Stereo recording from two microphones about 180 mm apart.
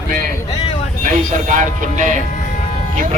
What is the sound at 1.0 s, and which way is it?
Speech, 45° right (ahead or behind).